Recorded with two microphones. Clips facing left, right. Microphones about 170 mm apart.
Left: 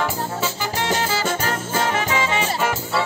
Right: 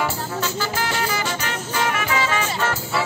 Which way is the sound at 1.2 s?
45° left (ahead or behind).